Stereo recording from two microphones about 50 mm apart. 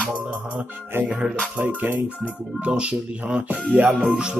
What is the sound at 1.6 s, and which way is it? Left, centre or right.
Music, right.